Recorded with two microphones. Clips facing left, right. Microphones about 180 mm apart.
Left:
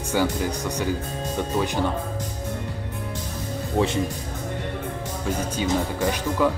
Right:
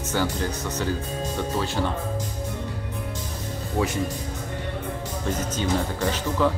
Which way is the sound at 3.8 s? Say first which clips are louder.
Left 3 dB; 25° left (ahead or behind).